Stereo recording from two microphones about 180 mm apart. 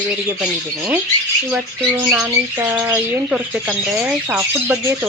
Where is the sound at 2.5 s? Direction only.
10° right (ahead or behind).